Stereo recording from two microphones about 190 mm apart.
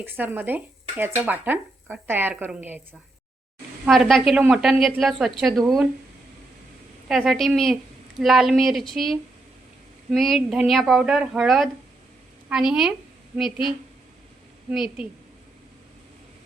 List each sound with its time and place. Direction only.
0.0 s speech: 10° right (ahead or behind)
3.8 s speech: centre (ahead or behind)
7.1 s speech: centre (ahead or behind)
14.7 s speech: 5° right (ahead or behind)